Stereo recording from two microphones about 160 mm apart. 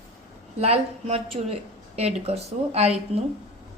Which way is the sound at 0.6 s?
40° right (ahead or behind).